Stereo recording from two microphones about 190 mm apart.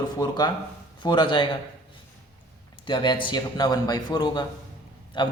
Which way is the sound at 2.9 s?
25° left (ahead or behind).